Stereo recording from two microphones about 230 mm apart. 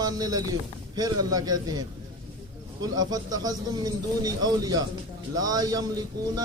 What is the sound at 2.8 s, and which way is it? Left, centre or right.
A man's voice, centre.